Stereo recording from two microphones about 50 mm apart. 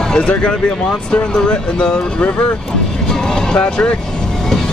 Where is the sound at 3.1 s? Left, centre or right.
Centre.